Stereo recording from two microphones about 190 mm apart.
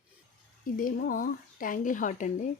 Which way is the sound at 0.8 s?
45° left (ahead or behind).